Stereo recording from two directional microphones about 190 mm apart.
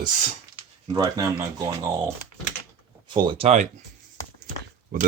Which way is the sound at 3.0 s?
25° right (ahead or behind).